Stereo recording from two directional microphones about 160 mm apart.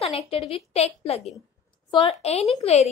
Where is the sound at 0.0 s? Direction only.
40° left (ahead or behind).